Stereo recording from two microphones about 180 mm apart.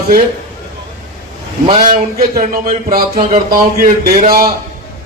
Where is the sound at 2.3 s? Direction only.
50° right (ahead or behind).